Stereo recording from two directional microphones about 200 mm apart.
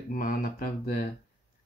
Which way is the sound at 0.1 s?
45° left (ahead or behind).